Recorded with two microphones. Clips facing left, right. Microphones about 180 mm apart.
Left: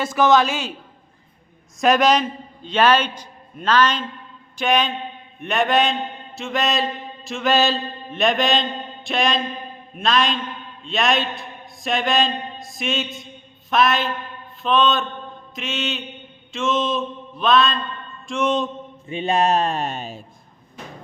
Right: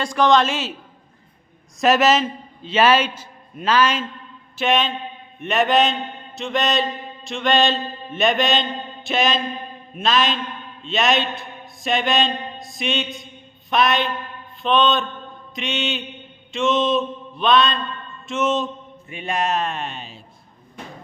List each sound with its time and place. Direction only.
0.0 s a man's voice: 5° left (ahead or behind)
1.8 s a man's voice: 5° right (ahead or behind)
19.0 s speech: 25° left (ahead or behind); by 20.2 s 45° left (ahead or behind)